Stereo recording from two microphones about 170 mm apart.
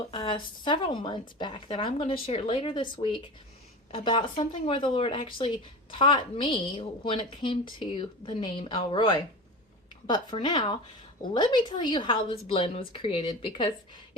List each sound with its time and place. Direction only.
0.1 s a woman's voice: 30° left (ahead or behind)